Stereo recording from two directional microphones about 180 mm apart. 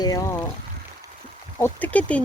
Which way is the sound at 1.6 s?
10° left (ahead or behind).